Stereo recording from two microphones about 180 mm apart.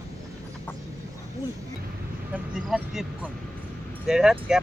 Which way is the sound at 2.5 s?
5° right (ahead or behind).